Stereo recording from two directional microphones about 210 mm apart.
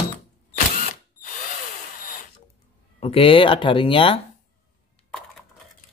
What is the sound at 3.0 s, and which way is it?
Speech, 25° left (ahead or behind).